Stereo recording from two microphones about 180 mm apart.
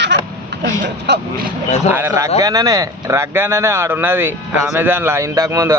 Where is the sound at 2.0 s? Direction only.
15° right (ahead or behind).